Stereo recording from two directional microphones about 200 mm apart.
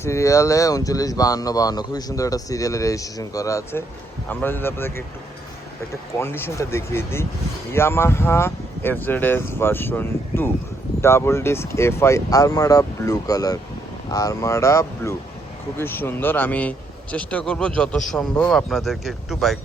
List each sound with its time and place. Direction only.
0.0 s a man's voice: 15° left (ahead or behind)